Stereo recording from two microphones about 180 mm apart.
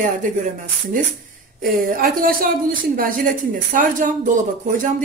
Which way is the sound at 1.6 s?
55° right (ahead or behind).